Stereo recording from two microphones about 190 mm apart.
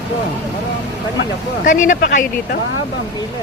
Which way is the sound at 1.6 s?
45° left (ahead or behind).